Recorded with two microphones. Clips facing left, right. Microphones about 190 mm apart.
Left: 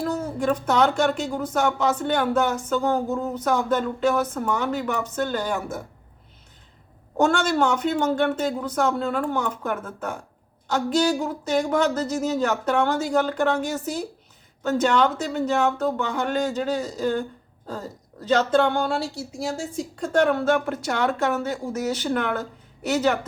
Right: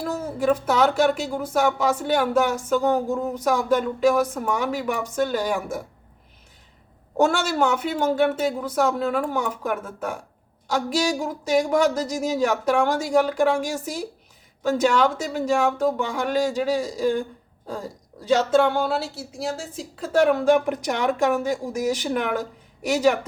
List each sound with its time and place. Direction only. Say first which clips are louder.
0.0 s speech: even; 5° right (ahead or behind)
7.2 s speech: even; 10° right (ahead or behind)